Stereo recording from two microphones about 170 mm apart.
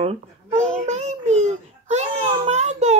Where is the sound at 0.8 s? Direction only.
40° right (ahead or behind).